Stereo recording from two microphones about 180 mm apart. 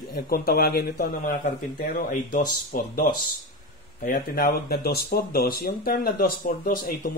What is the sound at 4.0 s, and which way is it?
Speech, 55° left (ahead or behind).